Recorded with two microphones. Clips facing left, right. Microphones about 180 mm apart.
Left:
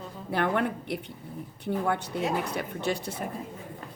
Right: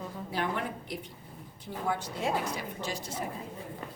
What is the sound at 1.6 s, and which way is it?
A woman's voice, 65° left (ahead or behind).